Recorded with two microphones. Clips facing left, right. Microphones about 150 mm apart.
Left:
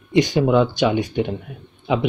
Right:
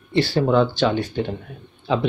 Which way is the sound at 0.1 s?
15° left (ahead or behind).